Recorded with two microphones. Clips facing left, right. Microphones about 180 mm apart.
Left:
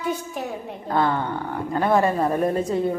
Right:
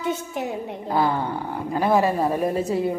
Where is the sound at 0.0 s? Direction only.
20° right (ahead or behind).